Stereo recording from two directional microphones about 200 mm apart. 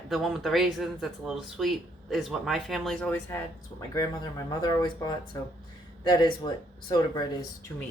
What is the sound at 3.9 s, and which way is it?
Speech, 15° left (ahead or behind).